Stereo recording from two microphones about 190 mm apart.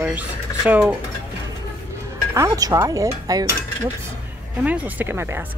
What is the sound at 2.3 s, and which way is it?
Speech, 15° right (ahead or behind).